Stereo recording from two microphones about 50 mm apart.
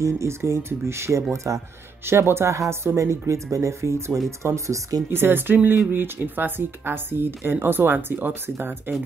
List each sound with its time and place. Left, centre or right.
0.0 s speech: right
1.3 s speech: right
2.0 s speech: right
2.5 s speech: right
5.1 s speech: right